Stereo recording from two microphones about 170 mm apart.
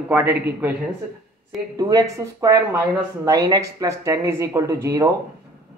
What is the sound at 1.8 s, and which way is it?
Speech, 20° right (ahead or behind).